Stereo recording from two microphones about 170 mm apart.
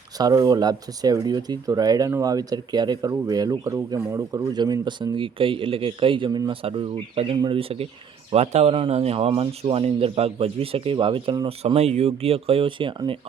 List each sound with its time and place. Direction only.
0.2 s speech: 20° right (ahead or behind)